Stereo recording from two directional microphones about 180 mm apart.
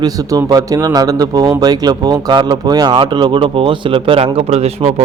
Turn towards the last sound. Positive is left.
turn(degrees=-35)  # may be behind; listen again after turning